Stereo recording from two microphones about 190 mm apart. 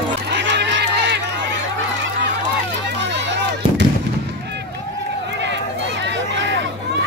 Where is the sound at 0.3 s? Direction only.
65° right (ahead or behind).